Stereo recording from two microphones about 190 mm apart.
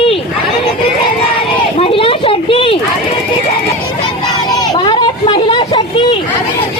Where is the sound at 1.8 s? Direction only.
30° left (ahead or behind).